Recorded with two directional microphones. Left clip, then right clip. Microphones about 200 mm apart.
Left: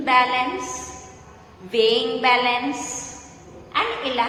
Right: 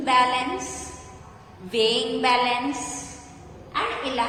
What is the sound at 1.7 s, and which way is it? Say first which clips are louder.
Speech: left 3 dB; 15° right (ahead or behind).